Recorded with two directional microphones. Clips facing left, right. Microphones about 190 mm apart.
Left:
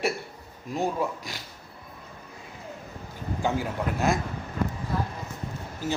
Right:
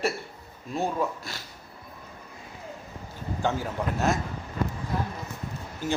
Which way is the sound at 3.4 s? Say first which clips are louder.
Even; 10° left (ahead or behind).